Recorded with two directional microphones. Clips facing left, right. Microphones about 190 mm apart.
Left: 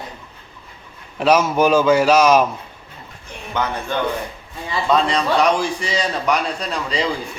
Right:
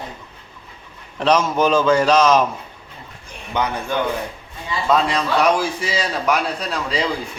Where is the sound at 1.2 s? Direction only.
10° left (ahead or behind).